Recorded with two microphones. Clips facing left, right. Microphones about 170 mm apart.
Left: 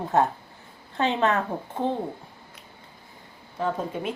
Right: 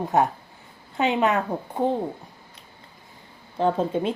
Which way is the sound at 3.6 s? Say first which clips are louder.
Right 6 dB; 30° right (ahead or behind).